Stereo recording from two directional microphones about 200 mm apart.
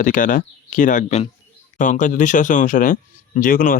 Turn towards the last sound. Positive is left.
turn(degrees=45)  # may be behind; listen again after turning